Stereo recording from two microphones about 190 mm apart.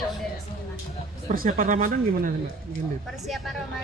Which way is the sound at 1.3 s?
45° right (ahead or behind).